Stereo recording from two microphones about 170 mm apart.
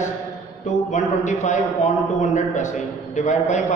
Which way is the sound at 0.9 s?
45° left (ahead or behind).